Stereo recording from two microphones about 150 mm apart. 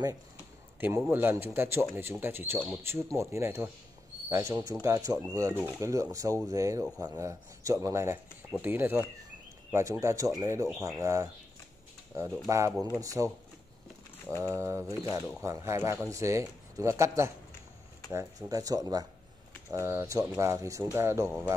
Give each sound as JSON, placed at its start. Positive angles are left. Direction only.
{"t": 0.7, "sound": "a man's voice", "side_deg": -15}
{"t": 14.4, "sound": "speech", "side_deg": -20}